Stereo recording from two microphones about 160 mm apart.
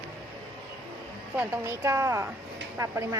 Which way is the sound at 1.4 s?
20° right (ahead or behind).